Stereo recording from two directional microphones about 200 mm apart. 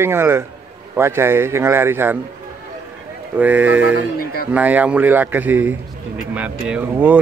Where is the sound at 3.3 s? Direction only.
10° right (ahead or behind).